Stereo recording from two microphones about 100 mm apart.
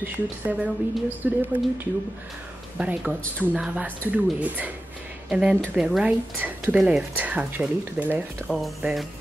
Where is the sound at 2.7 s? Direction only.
10° right (ahead or behind).